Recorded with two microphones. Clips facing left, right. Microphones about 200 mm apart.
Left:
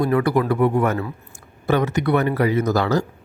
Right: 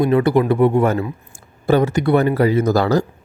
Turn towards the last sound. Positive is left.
turn(degrees=-35)  # may be behind; listen again after turning